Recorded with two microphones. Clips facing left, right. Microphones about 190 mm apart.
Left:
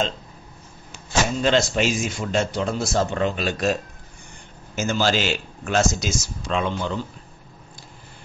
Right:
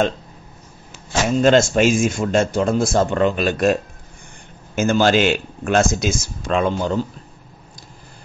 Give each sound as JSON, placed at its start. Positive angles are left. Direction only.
{"t": 1.4, "sound": "speech", "side_deg": -50}
{"t": 4.7, "sound": "speech", "side_deg": -55}